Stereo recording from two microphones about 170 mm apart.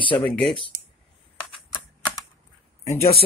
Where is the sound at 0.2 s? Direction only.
10° left (ahead or behind).